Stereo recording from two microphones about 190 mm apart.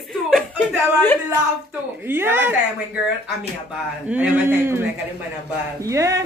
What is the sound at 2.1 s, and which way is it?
Speech, 10° right (ahead or behind).